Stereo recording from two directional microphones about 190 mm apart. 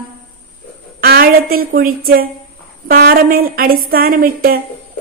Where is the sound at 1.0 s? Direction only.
50° right (ahead or behind).